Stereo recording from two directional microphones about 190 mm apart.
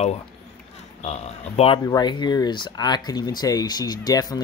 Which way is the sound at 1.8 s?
25° left (ahead or behind).